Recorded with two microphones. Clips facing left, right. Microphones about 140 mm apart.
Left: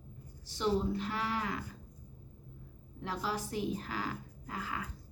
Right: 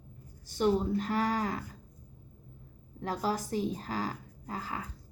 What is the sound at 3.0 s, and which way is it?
A woman's voice, 45° right (ahead or behind).